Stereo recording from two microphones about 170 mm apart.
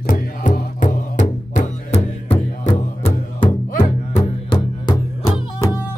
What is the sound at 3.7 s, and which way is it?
Music, 50° left (ahead or behind).